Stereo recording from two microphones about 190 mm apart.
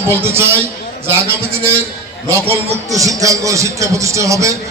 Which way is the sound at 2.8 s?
15° right (ahead or behind).